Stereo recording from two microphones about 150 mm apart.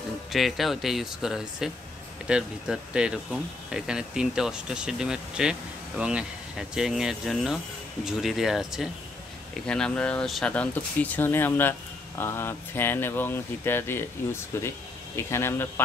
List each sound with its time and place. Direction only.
0.3 s speech: centre (ahead or behind); by 15.7 s 15° left (ahead or behind)